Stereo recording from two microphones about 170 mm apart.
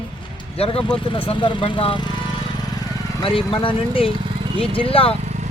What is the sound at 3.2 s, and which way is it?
Speech, 30° left (ahead or behind).